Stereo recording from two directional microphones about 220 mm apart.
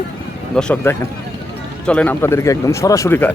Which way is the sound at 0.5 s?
5° left (ahead or behind).